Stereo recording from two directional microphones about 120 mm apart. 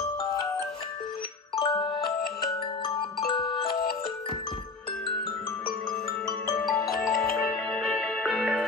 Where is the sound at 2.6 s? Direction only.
40° left (ahead or behind).